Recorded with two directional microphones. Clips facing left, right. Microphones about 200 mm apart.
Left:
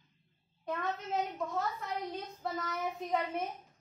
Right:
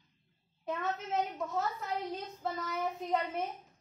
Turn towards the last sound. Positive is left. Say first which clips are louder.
# right 1 dB
turn(degrees=0)  # may be behind; listen again after turning